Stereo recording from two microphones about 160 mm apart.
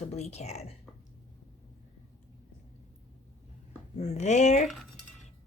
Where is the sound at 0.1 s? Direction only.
40° left (ahead or behind).